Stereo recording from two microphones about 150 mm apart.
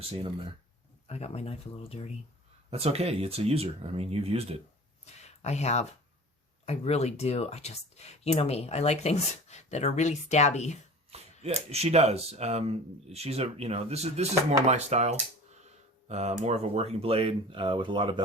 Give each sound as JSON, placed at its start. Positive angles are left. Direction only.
{"t": 1.0, "sound": "speech", "side_deg": 45}
{"t": 2.6, "sound": "speech", "side_deg": -40}
{"t": 5.0, "sound": "speech", "side_deg": 50}
{"t": 11.1, "sound": "a sound", "side_deg": -40}
{"t": 11.7, "sound": "speech", "side_deg": -45}